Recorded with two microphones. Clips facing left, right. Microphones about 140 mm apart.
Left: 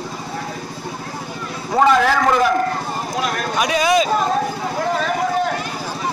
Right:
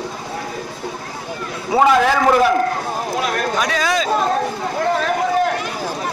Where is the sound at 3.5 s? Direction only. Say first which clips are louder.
Left 7 dB; 15° left (ahead or behind).